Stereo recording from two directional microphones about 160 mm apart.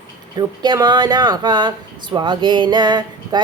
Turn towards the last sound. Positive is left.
turn(degrees=-25)  # may be behind; listen again after turning